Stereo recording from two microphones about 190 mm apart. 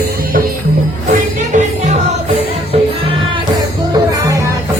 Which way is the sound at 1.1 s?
40° right (ahead or behind).